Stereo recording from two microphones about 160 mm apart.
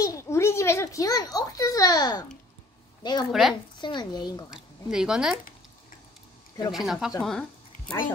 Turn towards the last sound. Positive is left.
turn(degrees=5)  # may be behind; listen again after turning